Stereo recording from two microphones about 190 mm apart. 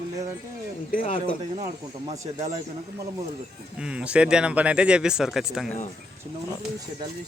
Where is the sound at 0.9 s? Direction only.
45° left (ahead or behind).